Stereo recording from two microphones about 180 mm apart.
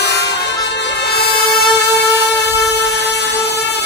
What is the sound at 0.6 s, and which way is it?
Music, 70° left (ahead or behind).